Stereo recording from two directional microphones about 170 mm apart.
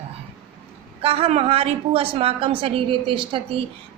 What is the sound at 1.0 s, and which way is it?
A woman's voice, 35° right (ahead or behind).